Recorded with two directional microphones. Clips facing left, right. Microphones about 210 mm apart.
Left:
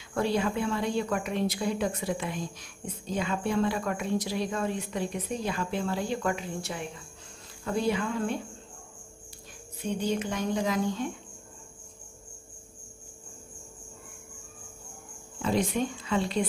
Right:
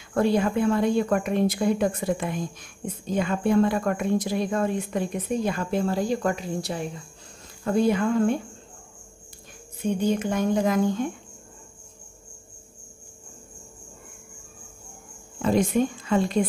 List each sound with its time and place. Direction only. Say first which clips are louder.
0.1 s a woman's voice: right 6 dB; 50° right (ahead or behind)
7.6 s a woman's voice: right 6 dB; 50° right (ahead or behind)
10.0 s a woman's voice: right 6 dB; 50° right (ahead or behind)
15.4 s a woman's voice: right 6 dB; 50° right (ahead or behind)